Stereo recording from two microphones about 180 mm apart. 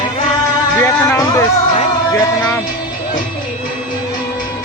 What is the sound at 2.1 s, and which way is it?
Music, 15° left (ahead or behind).